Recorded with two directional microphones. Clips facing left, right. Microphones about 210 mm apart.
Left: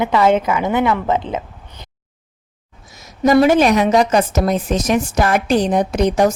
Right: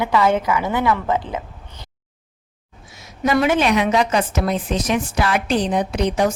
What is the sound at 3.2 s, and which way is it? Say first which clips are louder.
A woman's voice: left 6 dB; 40° left (ahead or behind).